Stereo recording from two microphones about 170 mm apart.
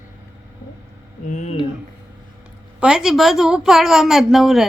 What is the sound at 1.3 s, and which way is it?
Speech, 45° left (ahead or behind).